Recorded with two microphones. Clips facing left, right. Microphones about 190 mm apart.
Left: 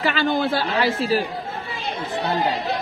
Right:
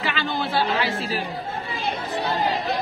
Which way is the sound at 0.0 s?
45° left (ahead or behind).